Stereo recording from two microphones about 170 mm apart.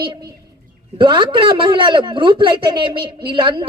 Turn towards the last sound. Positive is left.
turn(degrees=-30)  # may be behind; listen again after turning